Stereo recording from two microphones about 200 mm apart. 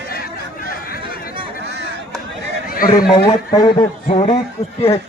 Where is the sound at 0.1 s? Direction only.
50° left (ahead or behind).